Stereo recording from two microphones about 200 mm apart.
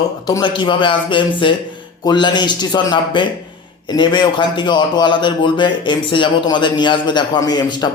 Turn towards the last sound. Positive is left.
turn(degrees=20)  # may be behind; listen again after turning